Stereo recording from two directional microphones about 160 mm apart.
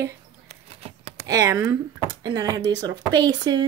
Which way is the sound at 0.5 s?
40° right (ahead or behind).